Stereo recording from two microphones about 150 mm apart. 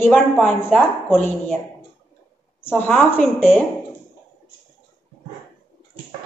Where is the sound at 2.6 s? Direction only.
15° left (ahead or behind).